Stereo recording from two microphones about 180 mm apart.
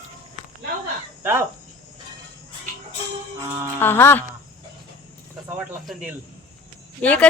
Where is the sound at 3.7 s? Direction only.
10° left (ahead or behind).